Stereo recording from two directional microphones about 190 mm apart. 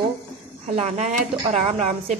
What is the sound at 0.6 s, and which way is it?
A woman's voice, 35° right (ahead or behind).